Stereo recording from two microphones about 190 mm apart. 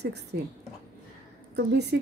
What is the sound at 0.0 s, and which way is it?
Speech, 60° right (ahead or behind).